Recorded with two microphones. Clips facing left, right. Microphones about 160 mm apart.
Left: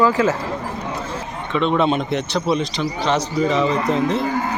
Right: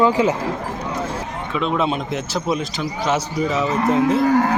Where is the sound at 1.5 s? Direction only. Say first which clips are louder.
Left 3 dB; centre (ahead or behind).